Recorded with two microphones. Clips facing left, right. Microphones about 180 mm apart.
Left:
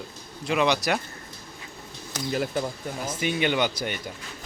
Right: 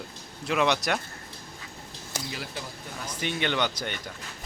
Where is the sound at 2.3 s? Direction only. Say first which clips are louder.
Left 14 dB; 50° left (ahead or behind).